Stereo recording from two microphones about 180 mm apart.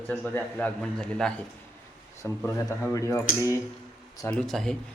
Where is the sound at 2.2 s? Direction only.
15° left (ahead or behind).